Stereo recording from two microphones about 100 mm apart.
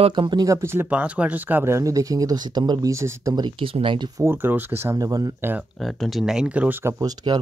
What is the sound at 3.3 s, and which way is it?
Speech, 55° right (ahead or behind).